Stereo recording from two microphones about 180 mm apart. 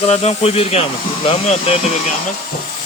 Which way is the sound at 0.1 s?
35° left (ahead or behind).